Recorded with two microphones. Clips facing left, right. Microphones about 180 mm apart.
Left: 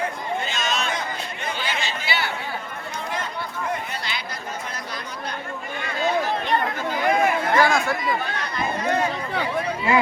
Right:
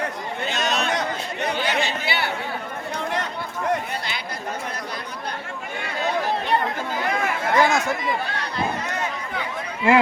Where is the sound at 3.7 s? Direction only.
55° right (ahead or behind).